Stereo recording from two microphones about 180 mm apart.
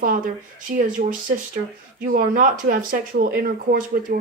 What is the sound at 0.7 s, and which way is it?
Speech, 50° right (ahead or behind).